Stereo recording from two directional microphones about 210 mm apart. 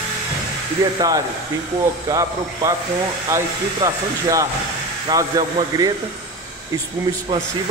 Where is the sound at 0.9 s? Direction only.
20° right (ahead or behind).